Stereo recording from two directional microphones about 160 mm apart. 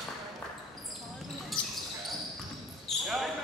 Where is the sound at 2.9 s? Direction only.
Centre (ahead or behind).